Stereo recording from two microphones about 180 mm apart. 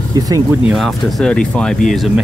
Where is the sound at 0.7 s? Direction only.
Centre (ahead or behind).